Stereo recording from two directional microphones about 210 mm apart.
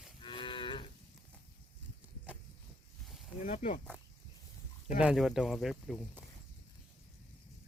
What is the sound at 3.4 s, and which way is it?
Speech, 35° left (ahead or behind).